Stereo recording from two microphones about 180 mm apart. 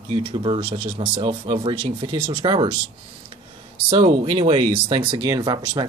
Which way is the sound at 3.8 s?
25° right (ahead or behind).